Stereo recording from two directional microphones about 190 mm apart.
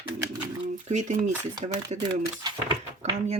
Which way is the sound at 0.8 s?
40° right (ahead or behind).